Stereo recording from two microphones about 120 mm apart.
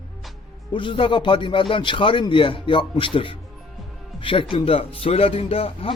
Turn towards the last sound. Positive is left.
turn(degrees=50)  # may be behind; listen again after turning